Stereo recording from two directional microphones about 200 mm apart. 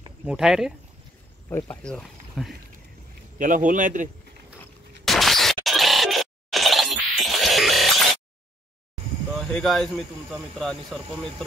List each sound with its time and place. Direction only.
0.2 s speech: 5° right (ahead or behind)
1.5 s speech: 10° left (ahead or behind)
3.3 s a man's voice: 40° right (ahead or behind)
5.0 s a sound: centre (ahead or behind)
9.3 s speech: centre (ahead or behind)